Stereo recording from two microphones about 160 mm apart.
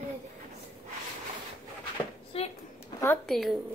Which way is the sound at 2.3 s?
40° left (ahead or behind).